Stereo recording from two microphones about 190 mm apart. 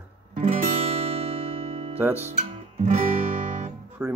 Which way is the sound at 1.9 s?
10° right (ahead or behind).